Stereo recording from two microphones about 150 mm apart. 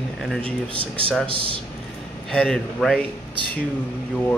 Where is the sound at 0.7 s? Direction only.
35° right (ahead or behind).